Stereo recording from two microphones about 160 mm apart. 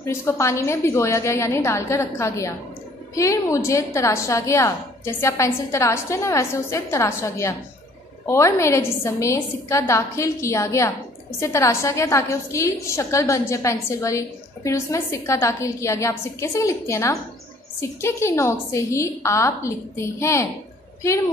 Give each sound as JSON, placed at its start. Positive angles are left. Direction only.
{"t": 0.0, "sound": "a woman's voice", "side_deg": 20}